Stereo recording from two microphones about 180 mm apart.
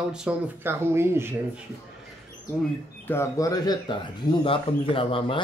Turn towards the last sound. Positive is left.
turn(degrees=30)  # may be behind; listen again after turning